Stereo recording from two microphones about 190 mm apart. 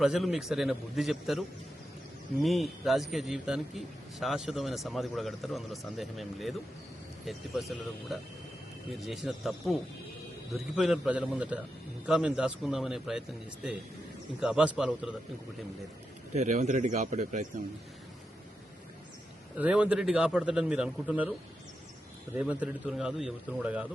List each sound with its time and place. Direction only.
0.0 s a man's voice: centre (ahead or behind)
16.3 s speech: 35° right (ahead or behind)
19.5 s a man's voice: 5° right (ahead or behind)
22.4 s a man's voice: 5° right (ahead or behind)